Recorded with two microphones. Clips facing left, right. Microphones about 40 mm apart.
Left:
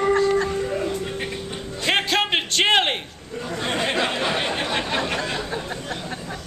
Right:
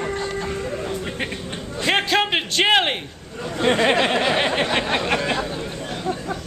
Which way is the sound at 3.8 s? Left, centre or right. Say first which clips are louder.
Right 2 dB; right.